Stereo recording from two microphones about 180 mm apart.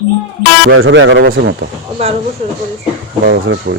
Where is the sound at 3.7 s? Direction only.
50° right (ahead or behind).